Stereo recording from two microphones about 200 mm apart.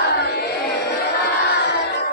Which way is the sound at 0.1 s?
55° left (ahead or behind).